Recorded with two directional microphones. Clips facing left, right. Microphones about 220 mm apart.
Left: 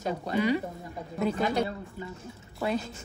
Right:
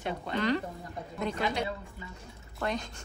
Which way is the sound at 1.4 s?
45° left (ahead or behind).